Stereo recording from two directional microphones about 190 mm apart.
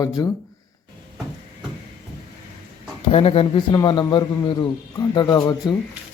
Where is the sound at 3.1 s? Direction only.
30° left (ahead or behind).